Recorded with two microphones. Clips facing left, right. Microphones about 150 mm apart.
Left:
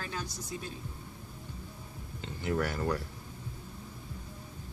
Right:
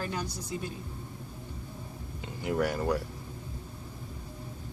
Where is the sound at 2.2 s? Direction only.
10° right (ahead or behind).